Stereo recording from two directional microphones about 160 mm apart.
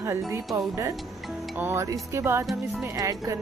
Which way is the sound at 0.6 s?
20° right (ahead or behind).